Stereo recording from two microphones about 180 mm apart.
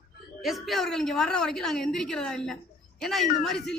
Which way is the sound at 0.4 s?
Centre (ahead or behind).